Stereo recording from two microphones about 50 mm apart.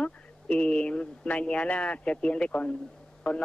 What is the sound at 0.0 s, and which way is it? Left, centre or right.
Speech, left.